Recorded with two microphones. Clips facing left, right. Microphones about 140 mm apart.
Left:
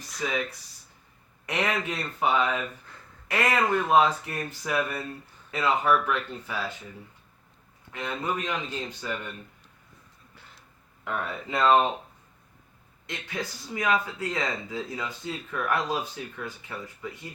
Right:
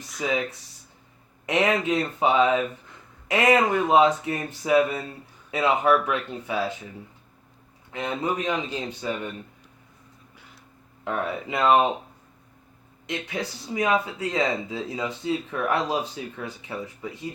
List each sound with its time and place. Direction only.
0.2 s speech: 15° right (ahead or behind)
1.5 s speech: 20° right (ahead or behind)
7.9 s speech: 20° right (ahead or behind)
10.3 s a sound: 10° right (ahead or behind)
11.0 s speech: 20° right (ahead or behind)
13.1 s speech: 20° right (ahead or behind)